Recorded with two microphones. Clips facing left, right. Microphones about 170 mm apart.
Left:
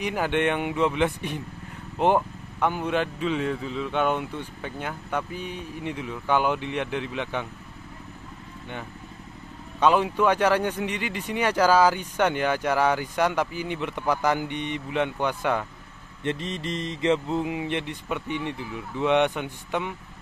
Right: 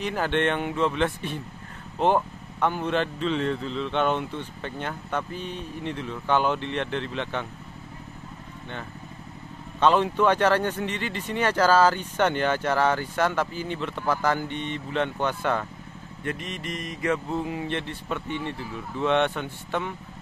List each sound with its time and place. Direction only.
0.0 s speech: 10° left (ahead or behind)
9.8 s speech: 10° left (ahead or behind)
16.3 s speech: 30° left (ahead or behind); by 19.9 s 15° left (ahead or behind)